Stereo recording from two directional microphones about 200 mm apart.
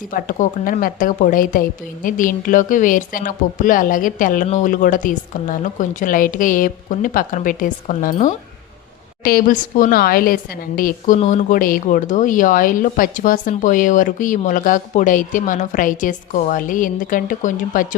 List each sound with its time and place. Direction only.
0.1 s a woman's voice: 45° left (ahead or behind)